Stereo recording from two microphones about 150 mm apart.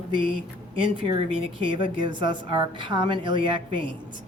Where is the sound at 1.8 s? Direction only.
30° right (ahead or behind).